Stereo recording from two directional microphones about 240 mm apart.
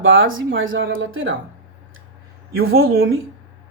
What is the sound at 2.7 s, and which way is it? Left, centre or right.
Speech, right.